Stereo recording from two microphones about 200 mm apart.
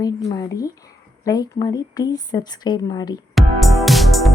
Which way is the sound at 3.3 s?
Centre (ahead or behind).